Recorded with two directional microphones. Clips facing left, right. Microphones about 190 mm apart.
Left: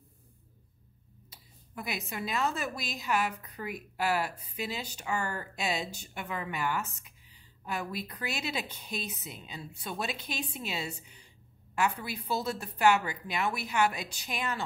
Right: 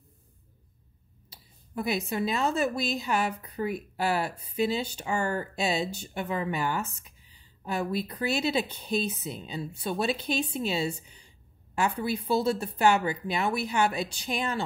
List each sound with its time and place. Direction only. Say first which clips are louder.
1.3 s speech: right 8 dB; 30° right (ahead or behind)